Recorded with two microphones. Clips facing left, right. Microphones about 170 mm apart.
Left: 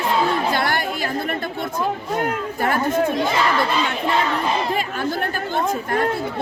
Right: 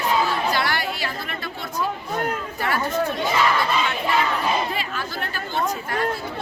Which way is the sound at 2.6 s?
50° left (ahead or behind).